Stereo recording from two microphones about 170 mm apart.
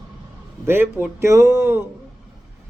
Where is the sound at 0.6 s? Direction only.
15° right (ahead or behind).